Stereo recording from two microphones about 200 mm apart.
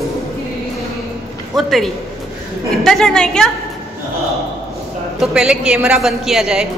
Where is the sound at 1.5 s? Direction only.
Centre (ahead or behind).